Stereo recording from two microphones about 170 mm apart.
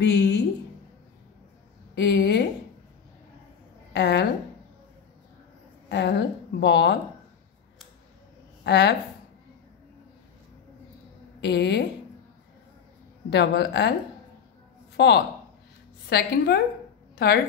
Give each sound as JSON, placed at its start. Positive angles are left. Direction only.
{"t": 0.0, "sound": "a woman's voice", "side_deg": 85}
{"t": 2.0, "sound": "a woman's voice", "side_deg": 90}
{"t": 3.9, "sound": "a woman's voice", "side_deg": 90}
{"t": 5.9, "sound": "a woman's voice", "side_deg": 90}
{"t": 8.6, "sound": "speech", "side_deg": 90}
{"t": 11.4, "sound": "a woman's voice", "side_deg": 90}
{"t": 13.3, "sound": "a woman's voice", "side_deg": 90}
{"t": 15.0, "sound": "a woman's voice", "side_deg": 90}
{"t": 16.1, "sound": "a woman's voice", "side_deg": 70}